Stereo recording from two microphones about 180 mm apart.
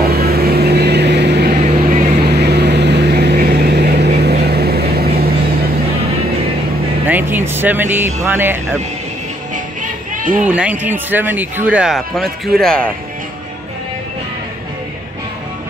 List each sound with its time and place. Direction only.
0.1 s vehicle: 60° right (ahead or behind)
1.6 s vehicle: 40° right (ahead or behind)
2.2 s vehicle: 65° right (ahead or behind)
7.1 s speech: 10° right (ahead or behind)
10.4 s speech: 5° right (ahead or behind)